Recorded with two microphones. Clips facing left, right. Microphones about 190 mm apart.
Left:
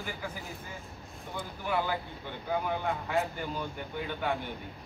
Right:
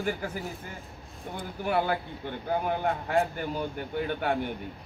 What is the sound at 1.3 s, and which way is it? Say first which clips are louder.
Speech: right 4 dB; 50° right (ahead or behind).